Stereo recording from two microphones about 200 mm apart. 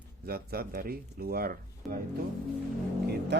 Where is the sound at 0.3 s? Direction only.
50° right (ahead or behind).